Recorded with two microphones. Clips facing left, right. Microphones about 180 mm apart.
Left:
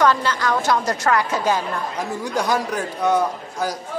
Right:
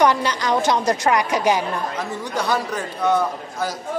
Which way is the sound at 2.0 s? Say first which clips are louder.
Left 2 dB; 15° left (ahead or behind).